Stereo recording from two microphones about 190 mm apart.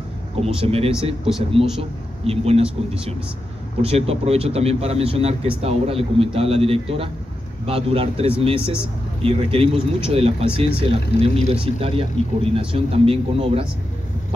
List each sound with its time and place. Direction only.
0.6 s speech: 30° right (ahead or behind)
3.8 s speech: 30° right (ahead or behind)